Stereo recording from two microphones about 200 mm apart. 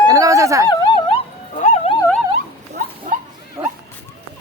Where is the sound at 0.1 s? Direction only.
15° right (ahead or behind).